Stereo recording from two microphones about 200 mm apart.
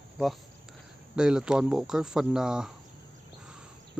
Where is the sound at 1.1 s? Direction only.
5° right (ahead or behind).